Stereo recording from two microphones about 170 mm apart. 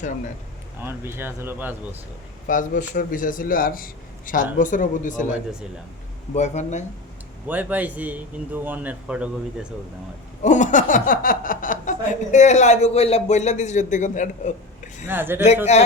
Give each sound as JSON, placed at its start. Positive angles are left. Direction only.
{"t": 0.8, "sound": "a man's voice", "side_deg": -15}
{"t": 2.5, "sound": "speech", "side_deg": 50}
{"t": 6.3, "sound": "speech", "side_deg": 40}
{"t": 7.4, "sound": "a man's voice", "side_deg": -10}
{"t": 10.4, "sound": "speech", "side_deg": 45}
{"t": 15.0, "sound": "a man's voice", "side_deg": -10}
{"t": 15.7, "sound": "speech", "side_deg": 40}